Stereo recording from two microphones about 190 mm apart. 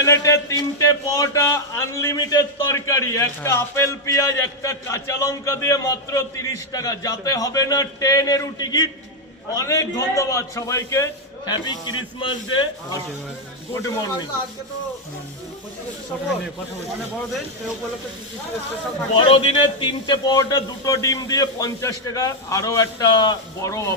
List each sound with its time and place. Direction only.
0.0 s a man's voice: 15° left (ahead or behind)
19.1 s a man's voice: 30° left (ahead or behind)